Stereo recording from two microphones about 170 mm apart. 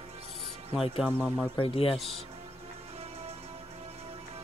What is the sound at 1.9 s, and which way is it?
Speech, centre (ahead or behind).